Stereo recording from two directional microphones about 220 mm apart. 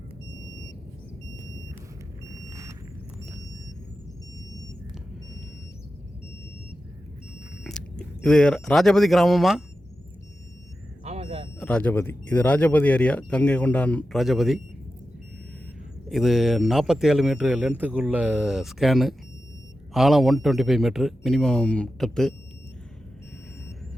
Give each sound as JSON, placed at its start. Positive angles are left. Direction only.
{"t": 2.3, "sound": "vehicle", "side_deg": -15}
{"t": 7.6, "sound": "speech", "side_deg": 5}
{"t": 11.0, "sound": "a sound", "side_deg": -30}
{"t": 11.6, "sound": "speech", "side_deg": 5}
{"t": 16.0, "sound": "speech", "side_deg": 0}